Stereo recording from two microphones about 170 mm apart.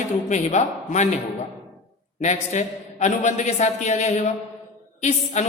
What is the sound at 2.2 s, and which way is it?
A man's voice, 45° left (ahead or behind).